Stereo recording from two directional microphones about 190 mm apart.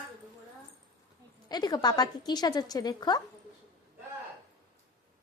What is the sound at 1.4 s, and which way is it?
A woman's voice, 20° left (ahead or behind).